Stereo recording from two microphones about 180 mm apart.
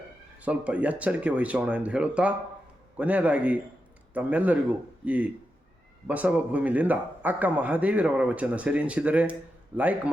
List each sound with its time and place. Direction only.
0.4 s a man's voice: 5° right (ahead or behind)